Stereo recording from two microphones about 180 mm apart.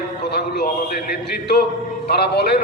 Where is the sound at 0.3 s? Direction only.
65° left (ahead or behind).